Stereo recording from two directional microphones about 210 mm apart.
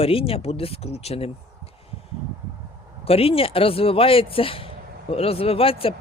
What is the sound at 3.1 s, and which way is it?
Speech, 25° left (ahead or behind).